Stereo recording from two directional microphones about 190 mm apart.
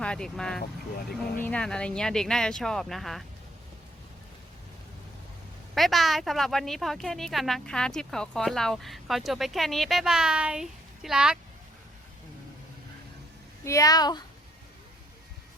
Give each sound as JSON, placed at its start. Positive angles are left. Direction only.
{"t": 0.0, "sound": "speech", "side_deg": 5}
{"t": 5.7, "sound": "speech", "side_deg": 0}
{"t": 13.7, "sound": "a woman's voice", "side_deg": 20}